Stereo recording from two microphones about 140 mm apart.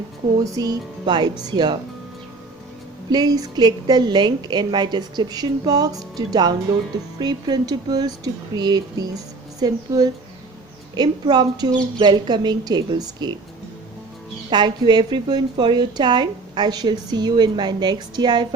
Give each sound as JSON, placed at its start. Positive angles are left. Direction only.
{"t": 0.3, "sound": "a woman's voice", "side_deg": -25}
{"t": 3.1, "sound": "a woman's voice", "side_deg": -30}
{"t": 14.5, "sound": "a woman's voice", "side_deg": -30}